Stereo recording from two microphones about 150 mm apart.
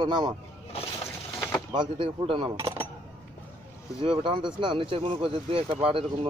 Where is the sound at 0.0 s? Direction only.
30° right (ahead or behind).